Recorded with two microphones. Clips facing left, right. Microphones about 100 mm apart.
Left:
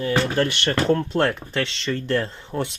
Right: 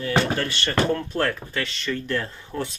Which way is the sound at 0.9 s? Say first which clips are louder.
Left 4 dB; 25° left (ahead or behind).